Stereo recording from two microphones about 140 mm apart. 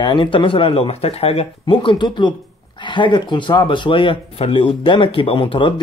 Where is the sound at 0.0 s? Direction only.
35° left (ahead or behind).